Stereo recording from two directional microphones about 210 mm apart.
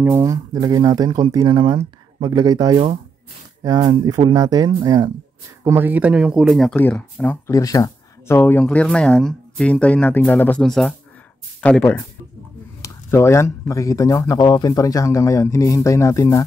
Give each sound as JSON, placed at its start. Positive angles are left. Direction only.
{"t": 0.0, "sound": "speech", "side_deg": -15}